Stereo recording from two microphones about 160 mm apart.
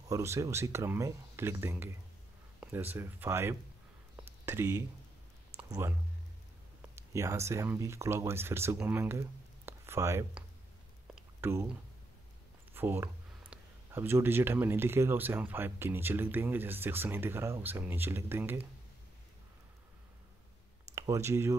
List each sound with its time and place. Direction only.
0.1 s speech: 20° right (ahead or behind)
7.0 s speech: 15° right (ahead or behind)
11.4 s speech: 15° right (ahead or behind)
20.9 s speech: 20° right (ahead or behind)